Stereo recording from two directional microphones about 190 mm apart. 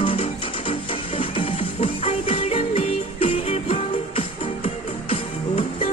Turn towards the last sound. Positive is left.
turn(degrees=30)  # may be behind; listen again after turning